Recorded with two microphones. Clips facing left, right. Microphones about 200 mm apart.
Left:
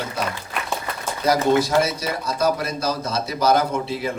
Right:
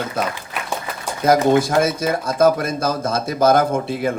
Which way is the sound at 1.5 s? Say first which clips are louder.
Right 2 dB; 50° right (ahead or behind).